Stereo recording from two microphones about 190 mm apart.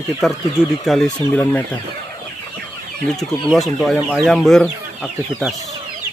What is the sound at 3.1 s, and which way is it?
Speech, centre (ahead or behind).